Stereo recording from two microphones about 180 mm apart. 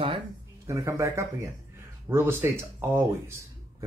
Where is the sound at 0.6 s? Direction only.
15° right (ahead or behind).